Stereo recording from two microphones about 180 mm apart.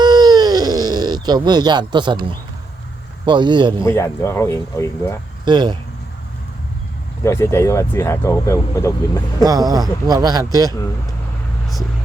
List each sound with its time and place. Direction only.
0.0 s a sound: 20° right (ahead or behind)
3.2 s speech: 25° right (ahead or behind)
3.8 s speech: 15° left (ahead or behind)
5.5 s speech: 25° right (ahead or behind)
7.3 s speech: 15° left (ahead or behind)
9.4 s speech: 20° right (ahead or behind)